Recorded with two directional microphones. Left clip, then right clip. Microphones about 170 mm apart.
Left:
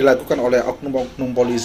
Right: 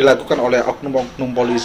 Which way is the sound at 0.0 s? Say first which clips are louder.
Right 2 dB; 55° left (ahead or behind).